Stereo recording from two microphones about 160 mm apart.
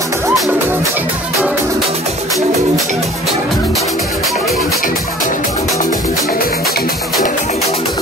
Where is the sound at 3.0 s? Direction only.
Centre (ahead or behind).